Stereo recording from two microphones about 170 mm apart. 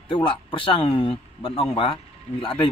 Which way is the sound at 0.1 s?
30° left (ahead or behind).